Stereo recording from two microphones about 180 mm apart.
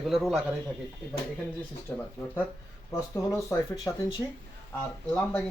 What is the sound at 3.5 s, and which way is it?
Speech, 20° left (ahead or behind).